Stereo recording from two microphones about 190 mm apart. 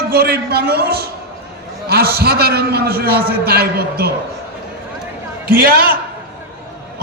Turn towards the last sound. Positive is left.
turn(degrees=-50)  # may be behind; listen again after turning